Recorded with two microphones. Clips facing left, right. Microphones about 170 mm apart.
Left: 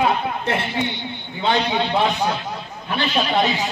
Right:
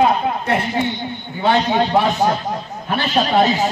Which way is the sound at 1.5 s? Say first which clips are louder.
Right 4 dB; 45° right (ahead or behind).